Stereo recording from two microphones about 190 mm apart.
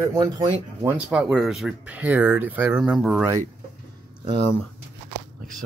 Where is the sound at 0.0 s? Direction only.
20° right (ahead or behind).